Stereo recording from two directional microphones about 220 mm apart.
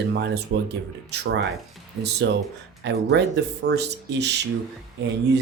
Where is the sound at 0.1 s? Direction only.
50° right (ahead or behind).